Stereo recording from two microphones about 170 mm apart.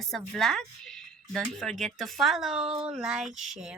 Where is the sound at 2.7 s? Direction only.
35° right (ahead or behind).